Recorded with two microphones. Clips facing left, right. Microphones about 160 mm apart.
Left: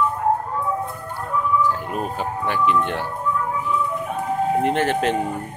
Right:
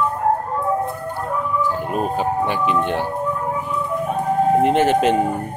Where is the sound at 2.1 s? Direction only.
20° right (ahead or behind).